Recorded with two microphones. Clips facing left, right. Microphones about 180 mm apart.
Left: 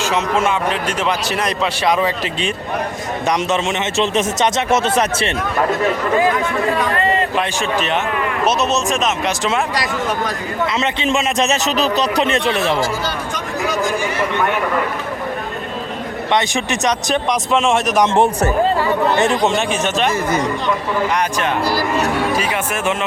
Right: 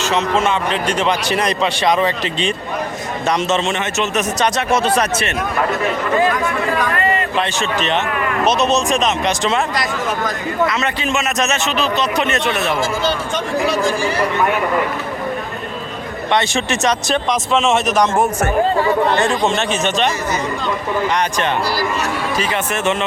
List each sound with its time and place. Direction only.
0.0 s speech: 10° left (ahead or behind)
3.9 s speech: 30° left (ahead or behind)
6.3 s speech: 25° left (ahead or behind)
7.3 s speech: 10° left (ahead or behind)
10.2 s a man's voice: 25° left (ahead or behind)
12.8 s speech: 25° right (ahead or behind)
16.3 s speech: 15° left (ahead or behind)
18.0 s a man's voice: 30° left (ahead or behind)
19.2 s speech: 20° left (ahead or behind)
21.6 s speech: 50° left (ahead or behind)
22.4 s speech: 5° left (ahead or behind)